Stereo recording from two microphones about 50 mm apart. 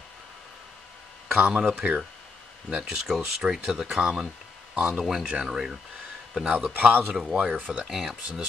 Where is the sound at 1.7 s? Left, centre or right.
Right.